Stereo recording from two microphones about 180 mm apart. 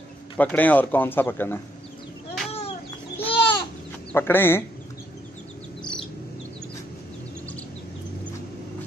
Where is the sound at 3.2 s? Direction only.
30° left (ahead or behind).